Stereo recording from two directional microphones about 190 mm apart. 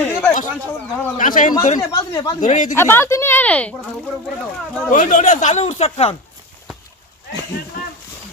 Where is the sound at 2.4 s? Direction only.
40° left (ahead or behind).